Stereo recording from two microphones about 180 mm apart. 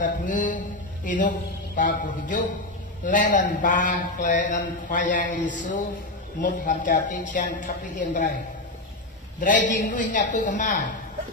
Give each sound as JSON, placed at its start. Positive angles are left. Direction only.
{"t": 0.0, "sound": "a man's voice", "side_deg": 45}
{"t": 9.4, "sound": "a man's voice", "side_deg": 45}